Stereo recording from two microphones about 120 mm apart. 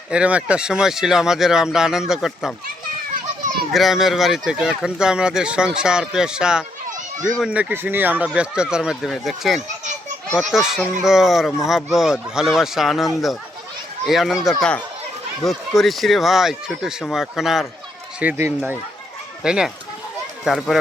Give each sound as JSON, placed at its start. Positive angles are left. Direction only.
{"t": 0.1, "sound": "speech", "side_deg": -10}
{"t": 3.7, "sound": "speech", "side_deg": 0}
{"t": 14.1, "sound": "speech", "side_deg": 0}
{"t": 18.2, "sound": "speech", "side_deg": -15}
{"t": 19.4, "sound": "speech", "side_deg": -5}